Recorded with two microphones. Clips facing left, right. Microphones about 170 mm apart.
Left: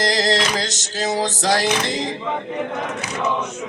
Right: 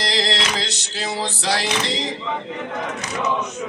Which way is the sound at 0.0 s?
45° left (ahead or behind).